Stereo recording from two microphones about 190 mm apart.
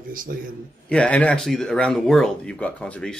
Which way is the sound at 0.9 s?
5° left (ahead or behind).